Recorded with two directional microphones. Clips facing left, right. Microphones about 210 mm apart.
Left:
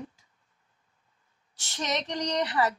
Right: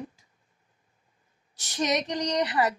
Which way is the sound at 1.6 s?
15° right (ahead or behind).